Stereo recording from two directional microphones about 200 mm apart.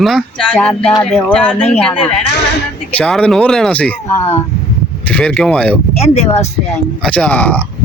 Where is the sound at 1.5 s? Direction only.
30° left (ahead or behind).